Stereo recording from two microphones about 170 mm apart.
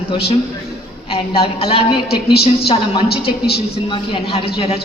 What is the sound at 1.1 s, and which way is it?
A man's voice, 35° left (ahead or behind).